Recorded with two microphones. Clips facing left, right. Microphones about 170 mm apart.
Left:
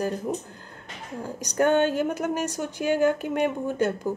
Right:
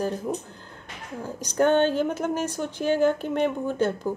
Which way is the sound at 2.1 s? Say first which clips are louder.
Even; 40° left (ahead or behind).